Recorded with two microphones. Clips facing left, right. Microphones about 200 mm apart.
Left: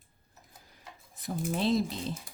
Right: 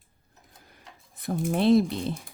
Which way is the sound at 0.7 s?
60° right (ahead or behind).